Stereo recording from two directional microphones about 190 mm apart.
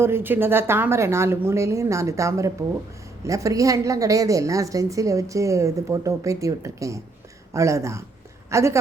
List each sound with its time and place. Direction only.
0.0 s a woman's voice: 10° right (ahead or behind)